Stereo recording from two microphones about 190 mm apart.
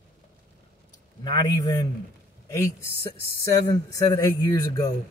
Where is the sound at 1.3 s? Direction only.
20° left (ahead or behind).